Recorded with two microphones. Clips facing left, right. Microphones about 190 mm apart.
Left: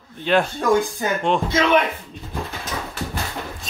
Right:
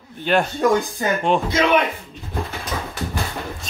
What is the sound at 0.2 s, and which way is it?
Speech, centre (ahead or behind).